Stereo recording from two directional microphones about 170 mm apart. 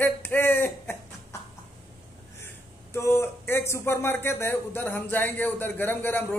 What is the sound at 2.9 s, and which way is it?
A man's voice, 15° left (ahead or behind).